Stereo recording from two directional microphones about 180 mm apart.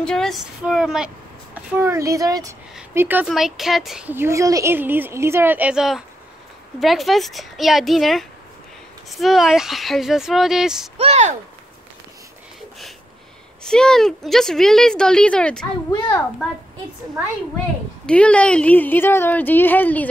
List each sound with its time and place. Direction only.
0.0 s speech: 5° left (ahead or behind)
1.8 s speech: 15° right (ahead or behind)
3.3 s speech: centre (ahead or behind)
11.0 s a sound: 35° right (ahead or behind)
13.7 s speech: 5° left (ahead or behind)
18.0 s speech: 5° left (ahead or behind)